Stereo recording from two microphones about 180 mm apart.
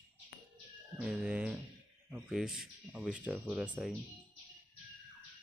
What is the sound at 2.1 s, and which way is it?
Speech, 5° right (ahead or behind).